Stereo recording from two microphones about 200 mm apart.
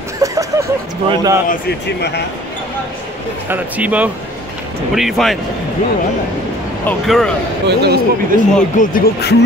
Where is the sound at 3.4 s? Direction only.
10° right (ahead or behind).